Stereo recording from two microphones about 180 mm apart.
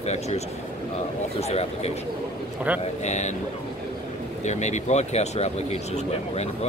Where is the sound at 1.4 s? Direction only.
35° left (ahead or behind).